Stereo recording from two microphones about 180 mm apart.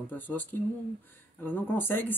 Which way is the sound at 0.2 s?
10° left (ahead or behind).